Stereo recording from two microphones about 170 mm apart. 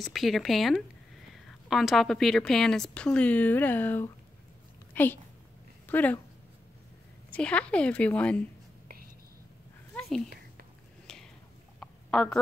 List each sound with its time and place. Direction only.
0.0 s a woman's voice: centre (ahead or behind)
7.3 s a woman's voice: 5° left (ahead or behind)
9.9 s a sound: 5° left (ahead or behind)